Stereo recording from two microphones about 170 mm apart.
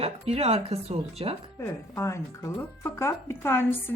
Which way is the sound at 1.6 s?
15° left (ahead or behind).